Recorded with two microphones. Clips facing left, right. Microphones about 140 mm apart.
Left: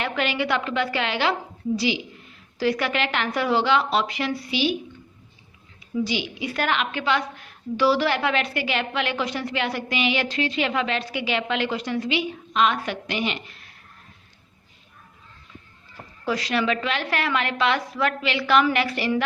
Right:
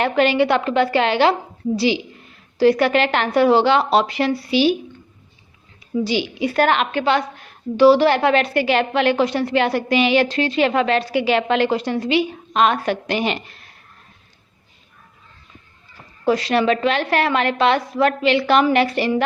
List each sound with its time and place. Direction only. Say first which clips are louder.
0.0 s a woman's voice: right 9 dB; 35° right (ahead or behind)
2.6 s a woman's voice: right 9 dB; 30° right (ahead or behind)
6.1 s a woman's voice: right 7 dB; 35° right (ahead or behind)
16.2 s a woman's voice: right 7 dB; 30° right (ahead or behind)